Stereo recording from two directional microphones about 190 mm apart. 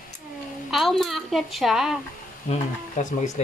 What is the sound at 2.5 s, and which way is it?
Speech, 40° left (ahead or behind).